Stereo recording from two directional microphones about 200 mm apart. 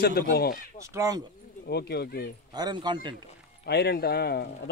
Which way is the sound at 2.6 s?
20° right (ahead or behind).